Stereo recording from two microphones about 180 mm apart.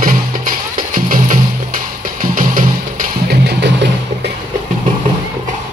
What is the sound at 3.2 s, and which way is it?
Music, 70° right (ahead or behind).